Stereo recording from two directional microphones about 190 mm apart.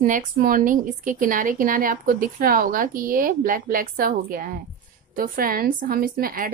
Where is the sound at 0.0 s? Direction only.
45° right (ahead or behind).